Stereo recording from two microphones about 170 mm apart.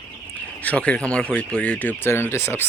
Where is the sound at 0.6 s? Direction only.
5° left (ahead or behind).